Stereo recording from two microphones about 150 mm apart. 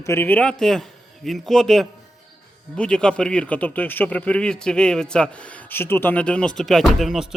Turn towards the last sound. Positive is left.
turn(degrees=0)  # may be behind; listen again after turning